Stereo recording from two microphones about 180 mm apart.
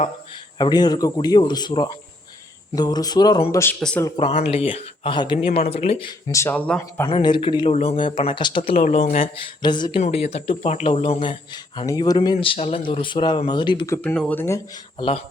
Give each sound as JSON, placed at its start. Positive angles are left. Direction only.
{"t": 0.6, "sound": "speech", "side_deg": 20}
{"t": 3.6, "sound": "speech", "side_deg": 5}
{"t": 4.4, "sound": "speech", "side_deg": 35}
{"t": 6.3, "sound": "speech", "side_deg": 10}
{"t": 7.1, "sound": "speech", "side_deg": 25}
{"t": 8.8, "sound": "speech", "side_deg": 40}
{"t": 10.0, "sound": "speech", "side_deg": 35}
{"t": 13.9, "sound": "speech", "side_deg": 10}
{"t": 14.9, "sound": "speech", "side_deg": 30}